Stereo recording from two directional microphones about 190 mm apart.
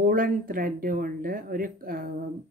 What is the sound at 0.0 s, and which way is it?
Speech, 45° right (ahead or behind).